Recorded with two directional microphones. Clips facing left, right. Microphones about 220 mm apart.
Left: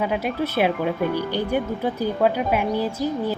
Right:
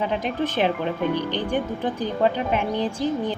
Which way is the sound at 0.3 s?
10° left (ahead or behind).